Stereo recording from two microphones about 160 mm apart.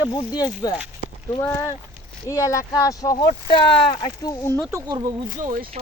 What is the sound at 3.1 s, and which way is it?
Speech, 35° left (ahead or behind).